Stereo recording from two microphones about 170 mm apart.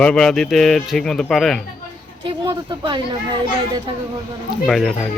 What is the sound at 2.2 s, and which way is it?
Speech, 25° right (ahead or behind).